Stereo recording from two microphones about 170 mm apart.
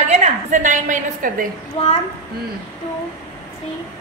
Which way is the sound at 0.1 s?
45° right (ahead or behind).